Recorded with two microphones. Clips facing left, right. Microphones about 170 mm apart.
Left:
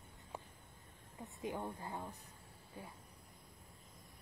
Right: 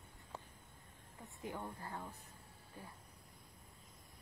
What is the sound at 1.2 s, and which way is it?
A woman's voice, 20° left (ahead or behind).